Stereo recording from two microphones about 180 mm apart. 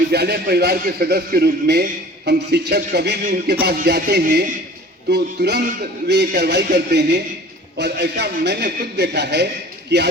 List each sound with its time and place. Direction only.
0.1 s a man's voice: 65° right (ahead or behind)